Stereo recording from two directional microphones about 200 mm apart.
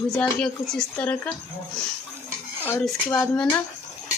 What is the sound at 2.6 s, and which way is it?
Speech, 10° left (ahead or behind).